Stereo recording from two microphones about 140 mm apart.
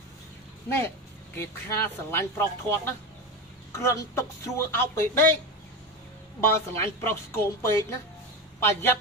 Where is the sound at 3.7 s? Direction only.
20° left (ahead or behind).